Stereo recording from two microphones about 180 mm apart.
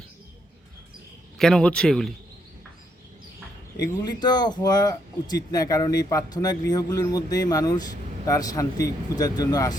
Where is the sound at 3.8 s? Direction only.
20° left (ahead or behind).